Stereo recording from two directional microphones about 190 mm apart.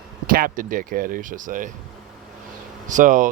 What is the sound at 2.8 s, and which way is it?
Speech, 45° right (ahead or behind).